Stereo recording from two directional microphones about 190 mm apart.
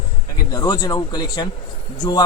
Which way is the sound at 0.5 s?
20° left (ahead or behind).